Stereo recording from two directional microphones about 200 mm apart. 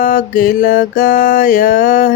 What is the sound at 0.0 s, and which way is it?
Mantra, 40° left (ahead or behind).